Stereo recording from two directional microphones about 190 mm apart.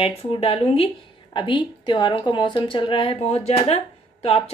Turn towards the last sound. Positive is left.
turn(degrees=30)  # may be behind; listen again after turning